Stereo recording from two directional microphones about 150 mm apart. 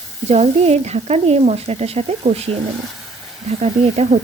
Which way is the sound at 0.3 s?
45° right (ahead or behind).